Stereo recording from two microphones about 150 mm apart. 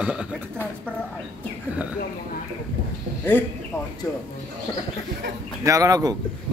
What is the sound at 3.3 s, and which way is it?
Speech, 10° left (ahead or behind).